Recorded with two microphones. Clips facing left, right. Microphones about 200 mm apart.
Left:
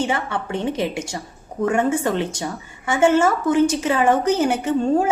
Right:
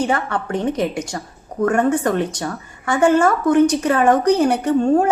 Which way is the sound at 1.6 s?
10° left (ahead or behind).